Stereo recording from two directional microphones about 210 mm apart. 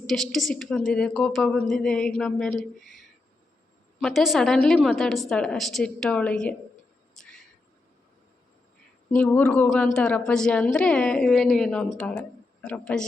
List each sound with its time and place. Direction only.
0.1 s speech: centre (ahead or behind)
4.0 s speech: centre (ahead or behind)
9.0 s speech: 5° left (ahead or behind)